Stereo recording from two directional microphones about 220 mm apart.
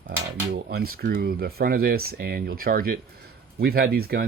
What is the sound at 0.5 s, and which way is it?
Speech, 45° right (ahead or behind).